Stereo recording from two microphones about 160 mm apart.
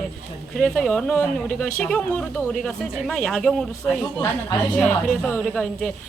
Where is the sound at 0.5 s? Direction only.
5° left (ahead or behind).